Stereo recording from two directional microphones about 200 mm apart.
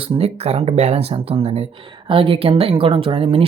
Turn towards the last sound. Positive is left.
turn(degrees=-25)  # may be behind; listen again after turning